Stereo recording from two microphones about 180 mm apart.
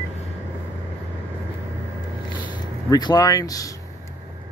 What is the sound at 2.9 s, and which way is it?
Speech, 20° left (ahead or behind).